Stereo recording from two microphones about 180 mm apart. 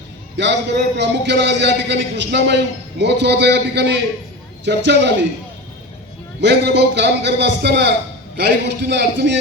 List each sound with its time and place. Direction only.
0.3 s a man's voice: 75° right (ahead or behind)
6.4 s a man's voice: 70° right (ahead or behind)